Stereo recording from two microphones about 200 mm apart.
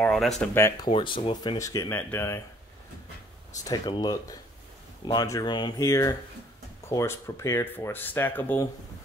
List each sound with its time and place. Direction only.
0.0 s speech: centre (ahead or behind)
3.6 s speech: 20° left (ahead or behind)